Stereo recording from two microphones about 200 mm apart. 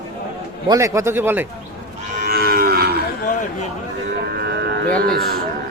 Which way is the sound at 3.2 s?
40° left (ahead or behind).